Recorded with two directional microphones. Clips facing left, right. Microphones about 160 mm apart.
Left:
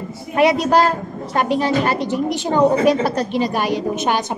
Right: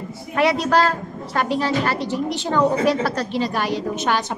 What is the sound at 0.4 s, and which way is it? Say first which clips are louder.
A woman's voice: left 3 dB; 15° left (ahead or behind).